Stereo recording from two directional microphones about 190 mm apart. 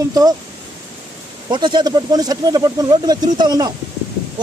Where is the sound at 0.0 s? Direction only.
20° right (ahead or behind).